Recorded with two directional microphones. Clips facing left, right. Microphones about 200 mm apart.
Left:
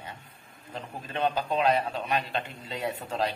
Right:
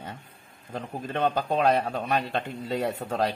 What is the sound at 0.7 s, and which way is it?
A man's voice, 50° right (ahead or behind).